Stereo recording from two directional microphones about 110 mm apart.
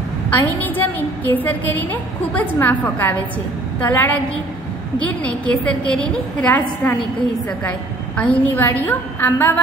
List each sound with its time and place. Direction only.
0.3 s a woman's voice: 15° left (ahead or behind)
8.2 s a woman's voice: 15° left (ahead or behind)